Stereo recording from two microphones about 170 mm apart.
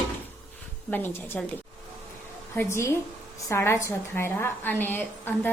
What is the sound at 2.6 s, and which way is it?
A woman's voice, 15° left (ahead or behind).